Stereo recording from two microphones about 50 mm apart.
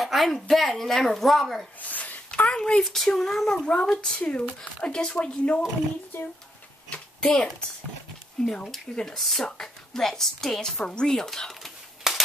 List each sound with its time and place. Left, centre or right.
0.0 s speech: centre
1.8 s a sound: left; by 2.8 s centre
2.8 s a woman's voice: centre; by 5.6 s left
7.2 s a woman's voice: centre
12.1 s cap gun: centre